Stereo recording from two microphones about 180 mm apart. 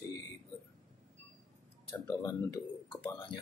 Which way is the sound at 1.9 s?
20° left (ahead or behind).